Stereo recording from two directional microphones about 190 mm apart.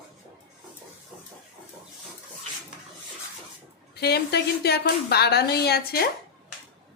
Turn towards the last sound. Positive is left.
turn(degrees=55)  # may be behind; listen again after turning